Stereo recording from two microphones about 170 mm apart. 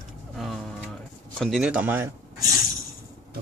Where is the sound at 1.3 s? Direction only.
Centre (ahead or behind).